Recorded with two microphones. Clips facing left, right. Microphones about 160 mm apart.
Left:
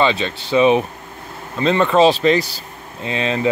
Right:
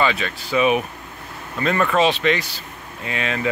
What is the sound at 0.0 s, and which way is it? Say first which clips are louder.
Speech: left 4 dB; 25° left (ahead or behind).